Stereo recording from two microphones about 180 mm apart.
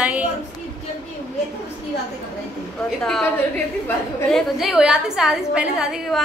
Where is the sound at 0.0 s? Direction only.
5° right (ahead or behind).